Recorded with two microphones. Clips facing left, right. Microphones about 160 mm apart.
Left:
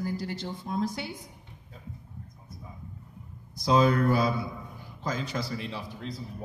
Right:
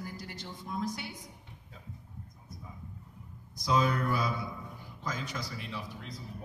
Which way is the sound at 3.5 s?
30° left (ahead or behind).